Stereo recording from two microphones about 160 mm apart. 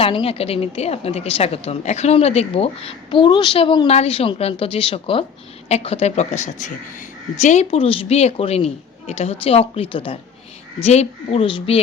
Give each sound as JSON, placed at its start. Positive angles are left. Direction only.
{"t": 0.0, "sound": "a woman's voice", "side_deg": 35}